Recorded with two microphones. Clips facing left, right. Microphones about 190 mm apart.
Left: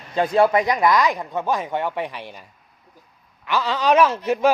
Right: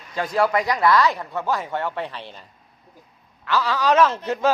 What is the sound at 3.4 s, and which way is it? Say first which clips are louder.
Speech: left 1 dB; 20° left (ahead or behind).